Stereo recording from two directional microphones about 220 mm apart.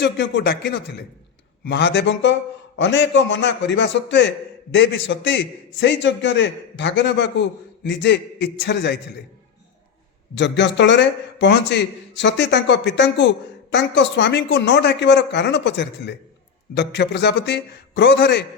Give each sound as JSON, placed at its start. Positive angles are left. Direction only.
{"t": 0.0, "sound": "a man's voice", "side_deg": 50}
{"t": 10.3, "sound": "a man's voice", "side_deg": 55}